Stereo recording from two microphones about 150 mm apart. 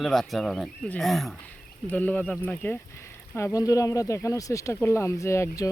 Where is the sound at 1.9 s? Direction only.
10° left (ahead or behind).